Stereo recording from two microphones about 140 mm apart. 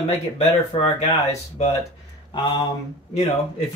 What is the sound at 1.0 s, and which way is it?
Speech, 50° left (ahead or behind).